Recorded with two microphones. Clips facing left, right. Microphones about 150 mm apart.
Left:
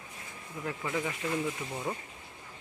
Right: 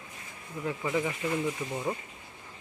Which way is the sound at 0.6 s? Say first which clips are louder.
Right 4 dB; 5° right (ahead or behind).